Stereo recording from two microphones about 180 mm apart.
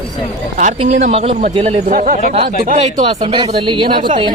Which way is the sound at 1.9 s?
50° right (ahead or behind).